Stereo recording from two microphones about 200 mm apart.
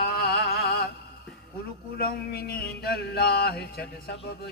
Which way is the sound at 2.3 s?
50° left (ahead or behind).